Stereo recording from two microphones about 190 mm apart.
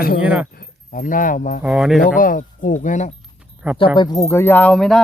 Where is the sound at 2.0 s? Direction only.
45° left (ahead or behind).